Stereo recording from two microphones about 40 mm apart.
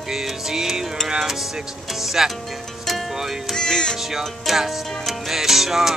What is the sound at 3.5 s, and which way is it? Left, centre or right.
Music, centre.